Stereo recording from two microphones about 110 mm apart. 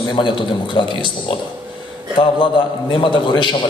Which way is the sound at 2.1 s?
50° left (ahead or behind).